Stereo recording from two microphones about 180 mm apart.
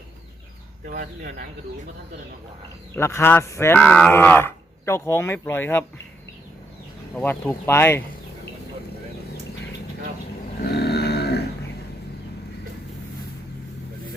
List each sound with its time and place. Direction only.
0.9 s speech: 50° right (ahead or behind)
2.9 s speech: 15° left (ahead or behind)
7.2 s speech: 5° left (ahead or behind)
10.6 s a sound: 65° left (ahead or behind)